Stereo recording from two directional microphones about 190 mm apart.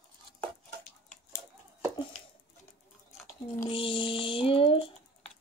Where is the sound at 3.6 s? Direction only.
25° left (ahead or behind).